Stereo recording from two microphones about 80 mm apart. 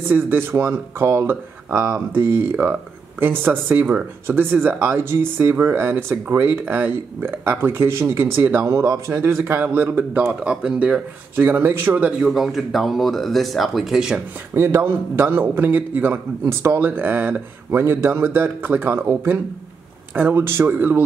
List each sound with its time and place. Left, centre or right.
0.1 s speech: right
10.4 s speech: centre
11.3 s speech: right
12.2 s speech: centre
14.5 s speech: right